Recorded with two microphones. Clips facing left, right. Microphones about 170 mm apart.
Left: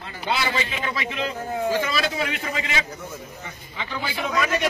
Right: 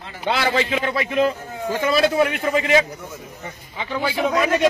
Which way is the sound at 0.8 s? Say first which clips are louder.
Right 8 dB; 45° right (ahead or behind).